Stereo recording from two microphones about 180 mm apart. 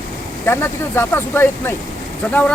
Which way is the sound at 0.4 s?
15° left (ahead or behind).